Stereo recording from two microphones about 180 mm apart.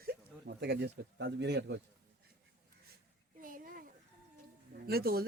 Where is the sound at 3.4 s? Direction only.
50° right (ahead or behind).